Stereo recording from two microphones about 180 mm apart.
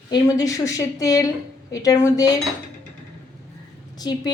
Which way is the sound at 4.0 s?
20° left (ahead or behind).